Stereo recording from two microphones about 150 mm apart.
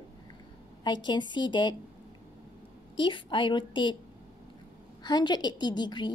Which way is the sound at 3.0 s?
35° left (ahead or behind).